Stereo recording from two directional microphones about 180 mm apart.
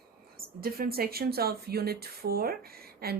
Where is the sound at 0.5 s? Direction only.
55° right (ahead or behind).